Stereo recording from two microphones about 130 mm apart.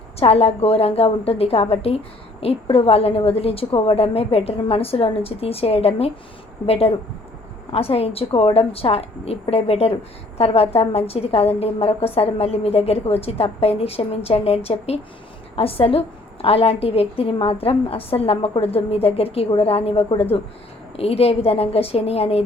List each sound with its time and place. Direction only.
0.2 s a woman's voice: 50° left (ahead or behind)